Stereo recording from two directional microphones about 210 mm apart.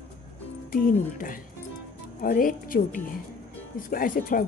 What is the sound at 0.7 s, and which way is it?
Speech, 40° left (ahead or behind).